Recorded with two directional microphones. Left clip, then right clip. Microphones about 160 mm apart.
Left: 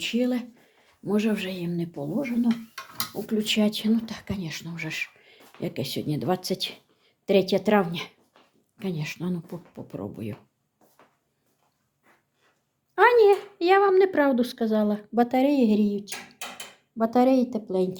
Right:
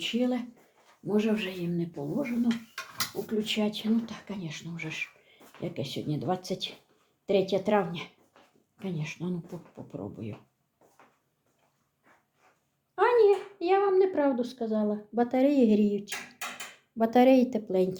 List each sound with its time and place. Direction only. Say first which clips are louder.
0.0 s a woman's voice: left 3 dB; 20° left (ahead or behind)
13.0 s speech: left 5 dB; 45° left (ahead or behind)
15.4 s speech: right 1 dB; 10° left (ahead or behind)